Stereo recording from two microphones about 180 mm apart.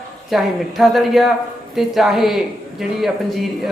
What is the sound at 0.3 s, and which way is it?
Speech, centre (ahead or behind).